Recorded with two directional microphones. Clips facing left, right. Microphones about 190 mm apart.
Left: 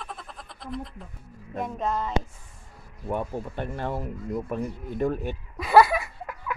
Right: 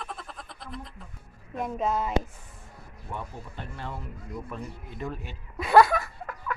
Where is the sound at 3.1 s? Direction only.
55° left (ahead or behind).